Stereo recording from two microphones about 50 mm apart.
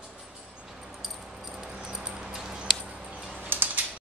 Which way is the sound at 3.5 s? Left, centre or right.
Right.